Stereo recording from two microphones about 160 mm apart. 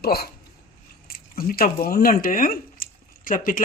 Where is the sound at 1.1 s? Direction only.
65° left (ahead or behind).